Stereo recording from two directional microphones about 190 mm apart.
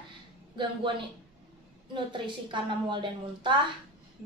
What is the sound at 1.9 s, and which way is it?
A woman's voice, 25° right (ahead or behind).